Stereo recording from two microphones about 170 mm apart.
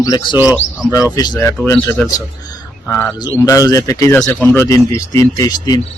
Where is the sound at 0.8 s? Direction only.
20° left (ahead or behind).